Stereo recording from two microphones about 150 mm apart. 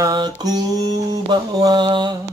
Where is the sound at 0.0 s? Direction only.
25° right (ahead or behind).